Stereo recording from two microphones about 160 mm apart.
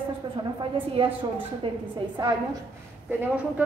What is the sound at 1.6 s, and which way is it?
Speech, 35° right (ahead or behind).